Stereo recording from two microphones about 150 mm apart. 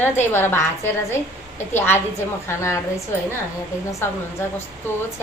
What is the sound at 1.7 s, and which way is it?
A woman's voice, 15° left (ahead or behind).